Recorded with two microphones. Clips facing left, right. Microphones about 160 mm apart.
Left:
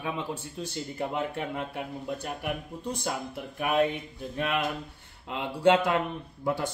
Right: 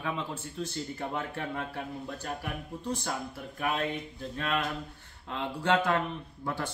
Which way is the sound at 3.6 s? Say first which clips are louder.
Left 6 dB; 15° left (ahead or behind).